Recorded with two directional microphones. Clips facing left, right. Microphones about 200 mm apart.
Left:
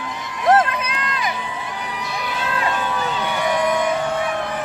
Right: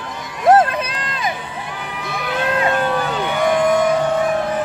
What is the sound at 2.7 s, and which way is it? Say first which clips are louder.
Music: right 5 dB; 50° right (ahead or behind).